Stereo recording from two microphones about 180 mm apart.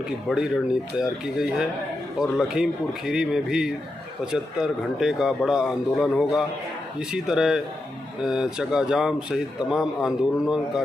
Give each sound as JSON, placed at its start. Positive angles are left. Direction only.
{"t": 0.3, "sound": "speech", "side_deg": -5}